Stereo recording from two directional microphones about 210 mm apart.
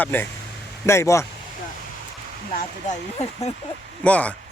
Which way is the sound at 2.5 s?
30° left (ahead or behind).